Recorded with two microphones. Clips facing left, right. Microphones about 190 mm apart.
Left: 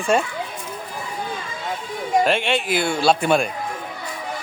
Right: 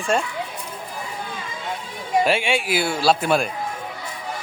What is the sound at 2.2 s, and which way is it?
Speech, 5° right (ahead or behind).